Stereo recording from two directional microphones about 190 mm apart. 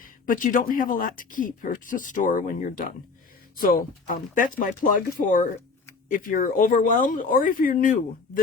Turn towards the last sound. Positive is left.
turn(degrees=45)  # may be behind; listen again after turning